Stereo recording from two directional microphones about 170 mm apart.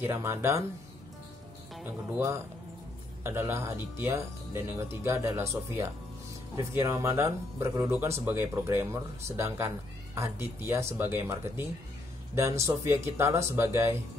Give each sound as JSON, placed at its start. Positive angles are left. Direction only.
{"t": 0.0, "sound": "speech", "side_deg": -15}
{"t": 1.8, "sound": "speech", "side_deg": -10}